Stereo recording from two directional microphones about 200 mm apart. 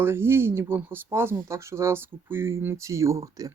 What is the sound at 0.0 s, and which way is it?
Speech, 10° right (ahead or behind).